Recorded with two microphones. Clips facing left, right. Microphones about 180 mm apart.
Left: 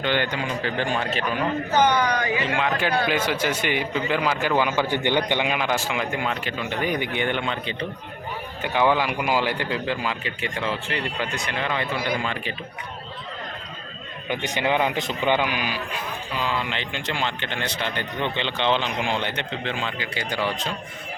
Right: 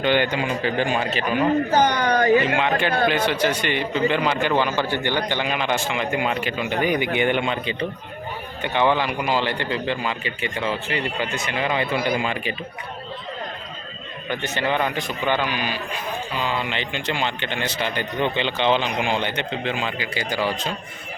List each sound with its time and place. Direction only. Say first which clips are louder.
0.0 s a man's voice: right 4 dB; 15° right (ahead or behind)
1.7 s speech: right 1 dB; 50° right (ahead or behind)
3.4 s a man's voice: right 2 dB; 10° left (ahead or behind)
6.1 s a man's voice: right 4 dB; 10° right (ahead or behind)
8.6 s a man's voice: right 1 dB; 5° left (ahead or behind); by 12.5 s 10° right (ahead or behind)
14.3 s a man's voice: even; 15° left (ahead or behind); by 20.7 s centre (ahead or behind)